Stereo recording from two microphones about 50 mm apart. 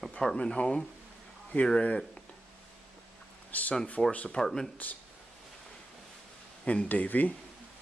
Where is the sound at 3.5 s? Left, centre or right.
Left.